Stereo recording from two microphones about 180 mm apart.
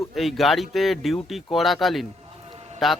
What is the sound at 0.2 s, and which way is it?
A man's voice, centre (ahead or behind).